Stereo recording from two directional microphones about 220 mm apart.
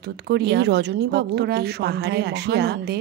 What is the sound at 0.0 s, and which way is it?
Speech, 45° right (ahead or behind).